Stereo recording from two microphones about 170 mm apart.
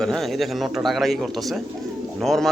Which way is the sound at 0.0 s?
Centre (ahead or behind).